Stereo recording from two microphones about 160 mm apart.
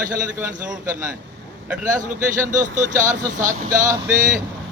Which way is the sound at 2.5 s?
50° right (ahead or behind).